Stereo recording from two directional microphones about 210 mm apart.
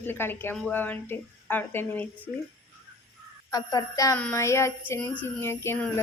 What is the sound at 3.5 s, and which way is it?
Speech, 15° left (ahead or behind).